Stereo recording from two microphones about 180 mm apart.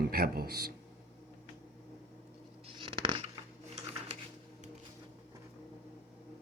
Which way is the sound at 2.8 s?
30° right (ahead or behind).